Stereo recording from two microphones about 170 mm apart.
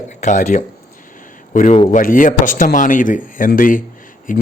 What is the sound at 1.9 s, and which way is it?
Speech, 55° left (ahead or behind).